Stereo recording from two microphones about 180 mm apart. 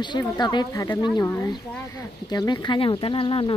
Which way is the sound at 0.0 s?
25° left (ahead or behind).